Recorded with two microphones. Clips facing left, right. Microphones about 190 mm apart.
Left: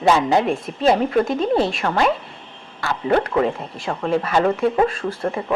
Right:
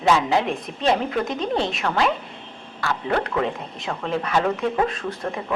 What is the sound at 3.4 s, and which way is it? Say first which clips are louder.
A woman's voice: left 4 dB; 5° left (ahead or behind).